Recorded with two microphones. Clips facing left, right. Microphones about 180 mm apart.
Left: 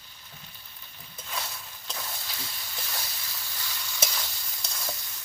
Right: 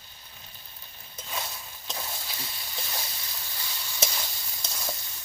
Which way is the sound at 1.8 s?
15° right (ahead or behind).